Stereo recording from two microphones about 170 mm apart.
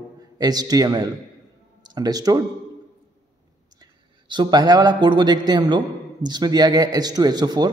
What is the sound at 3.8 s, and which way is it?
A man's voice, 25° right (ahead or behind).